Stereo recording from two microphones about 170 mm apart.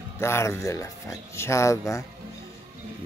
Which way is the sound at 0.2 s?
15° left (ahead or behind).